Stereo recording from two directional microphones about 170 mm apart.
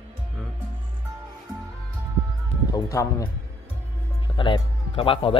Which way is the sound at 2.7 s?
20° left (ahead or behind).